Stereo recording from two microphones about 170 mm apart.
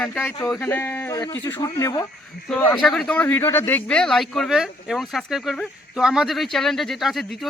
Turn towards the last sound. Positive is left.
turn(degrees=0)  # may be behind; listen again after turning